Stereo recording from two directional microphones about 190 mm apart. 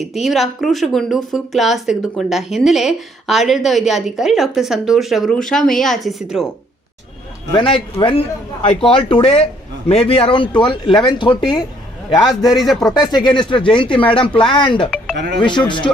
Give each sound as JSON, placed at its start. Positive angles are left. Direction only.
{"t": 0.0, "sound": "speech", "side_deg": 0}
{"t": 7.5, "sound": "speech", "side_deg": 30}
{"t": 12.2, "sound": "speech", "side_deg": 0}
{"t": 13.0, "sound": "speech", "side_deg": 25}